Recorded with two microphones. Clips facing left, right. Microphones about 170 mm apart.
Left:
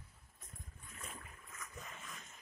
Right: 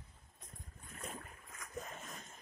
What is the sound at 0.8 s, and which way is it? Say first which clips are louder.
Boat: right 5 dB; 45° right (ahead or behind).